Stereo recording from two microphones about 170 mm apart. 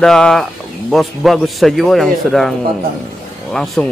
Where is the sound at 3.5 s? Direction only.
Centre (ahead or behind).